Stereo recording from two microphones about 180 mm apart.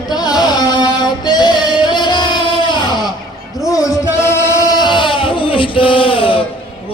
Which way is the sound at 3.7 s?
15° left (ahead or behind).